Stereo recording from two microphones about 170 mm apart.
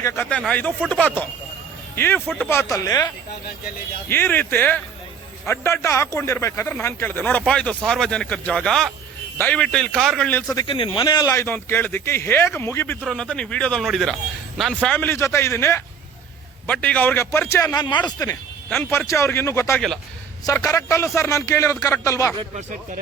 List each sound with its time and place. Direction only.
0.0 s speech: 10° left (ahead or behind)
2.2 s a man's voice: centre (ahead or behind)
2.5 s speech: 15° left (ahead or behind)
4.1 s a man's voice: 10° left (ahead or behind)
10.5 s a man's voice: 25° left (ahead or behind)
18.0 s speech: 15° left (ahead or behind)
22.5 s speech: 50° right (ahead or behind)